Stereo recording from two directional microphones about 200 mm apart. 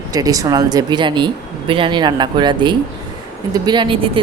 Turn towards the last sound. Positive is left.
turn(degrees=-25)  # may be behind; listen again after turning